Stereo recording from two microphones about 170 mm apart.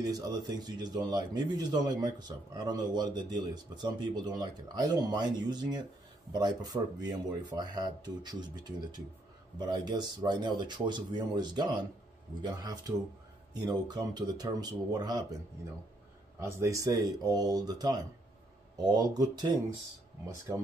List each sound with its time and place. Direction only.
0.0 s a man's voice: 25° right (ahead or behind)
16.3 s a man's voice: 15° right (ahead or behind)